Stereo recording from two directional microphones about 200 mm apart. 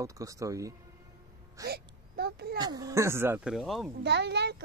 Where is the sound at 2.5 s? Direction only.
20° right (ahead or behind); by 3.9 s centre (ahead or behind).